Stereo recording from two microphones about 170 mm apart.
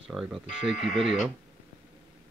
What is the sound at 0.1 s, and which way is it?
Speech, centre (ahead or behind).